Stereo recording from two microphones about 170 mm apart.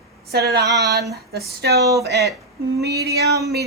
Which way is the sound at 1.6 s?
75° right (ahead or behind).